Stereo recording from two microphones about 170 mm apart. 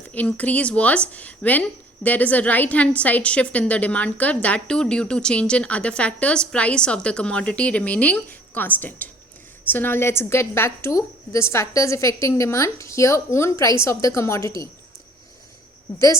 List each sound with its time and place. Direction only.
0.1 s a woman's voice: 10° left (ahead or behind)